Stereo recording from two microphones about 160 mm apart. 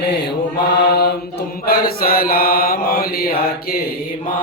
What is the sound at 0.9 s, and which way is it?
Chant, 90° left.